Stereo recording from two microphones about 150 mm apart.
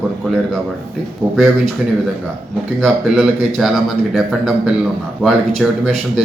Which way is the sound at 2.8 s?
Centre (ahead or behind).